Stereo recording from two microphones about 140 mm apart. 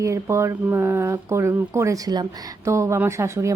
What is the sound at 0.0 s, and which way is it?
A woman's voice, 20° right (ahead or behind).